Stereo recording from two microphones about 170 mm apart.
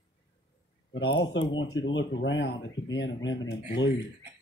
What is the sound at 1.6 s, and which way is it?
Speech, 90° left.